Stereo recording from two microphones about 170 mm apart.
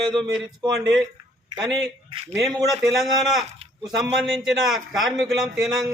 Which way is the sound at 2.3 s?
20° right (ahead or behind).